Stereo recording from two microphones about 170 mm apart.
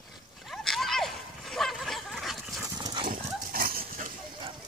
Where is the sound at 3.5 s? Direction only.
60° right (ahead or behind).